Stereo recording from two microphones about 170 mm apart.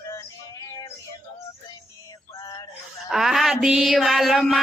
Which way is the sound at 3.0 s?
Centre (ahead or behind).